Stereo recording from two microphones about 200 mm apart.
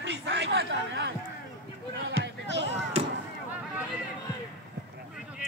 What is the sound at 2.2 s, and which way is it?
Music, 60° right (ahead or behind).